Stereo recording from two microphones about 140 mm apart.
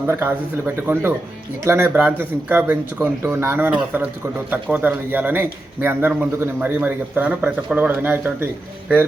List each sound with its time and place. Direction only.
0.1 s speech: 15° right (ahead or behind)